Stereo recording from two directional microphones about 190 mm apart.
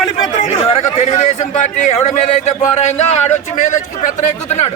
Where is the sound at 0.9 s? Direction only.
35° left (ahead or behind).